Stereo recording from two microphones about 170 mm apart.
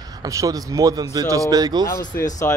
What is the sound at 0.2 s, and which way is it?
Speech, 20° right (ahead or behind).